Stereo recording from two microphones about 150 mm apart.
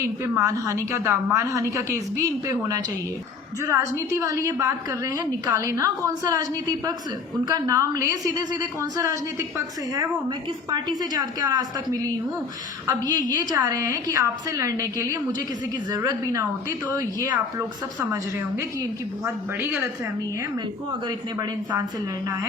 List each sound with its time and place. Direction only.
0.3 s a woman's voice: 20° right (ahead or behind)
3.6 s a woman's voice: 20° right (ahead or behind)
19.2 s speech: 15° right (ahead or behind)
21.3 s a woman's voice: 20° right (ahead or behind)